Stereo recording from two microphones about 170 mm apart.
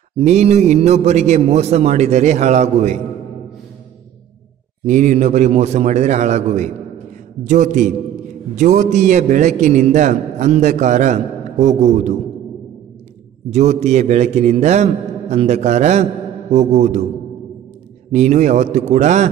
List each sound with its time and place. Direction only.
0.2 s a man's voice: 40° right (ahead or behind)
4.8 s a man's voice: 45° right (ahead or behind)
13.5 s a man's voice: 40° right (ahead or behind)
18.1 s a man's voice: 45° right (ahead or behind)